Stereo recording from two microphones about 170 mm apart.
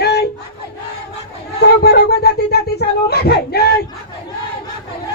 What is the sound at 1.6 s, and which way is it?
Speech, 70° left (ahead or behind).